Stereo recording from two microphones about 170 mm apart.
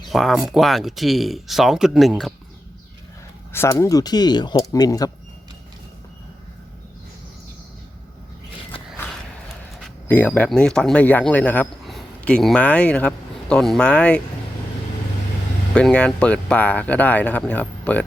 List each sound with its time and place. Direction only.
0.1 s speech: centre (ahead or behind)
3.5 s speech: 15° left (ahead or behind)
9.8 s speech: 10° left (ahead or behind)
15.7 s speech: 5° left (ahead or behind)